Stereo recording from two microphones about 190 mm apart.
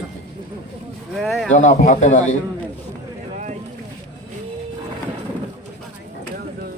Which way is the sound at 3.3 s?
40° right (ahead or behind).